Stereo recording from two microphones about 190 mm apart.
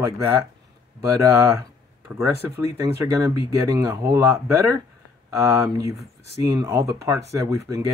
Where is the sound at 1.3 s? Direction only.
15° right (ahead or behind).